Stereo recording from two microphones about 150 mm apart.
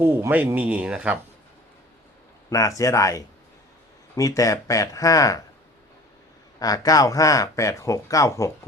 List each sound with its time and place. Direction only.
0.0 s speech: 15° right (ahead or behind)
2.5 s speech: 20° left (ahead or behind)
6.6 s speech: 25° left (ahead or behind)